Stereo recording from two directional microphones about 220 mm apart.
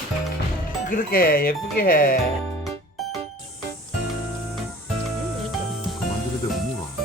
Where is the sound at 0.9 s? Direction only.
40° left (ahead or behind).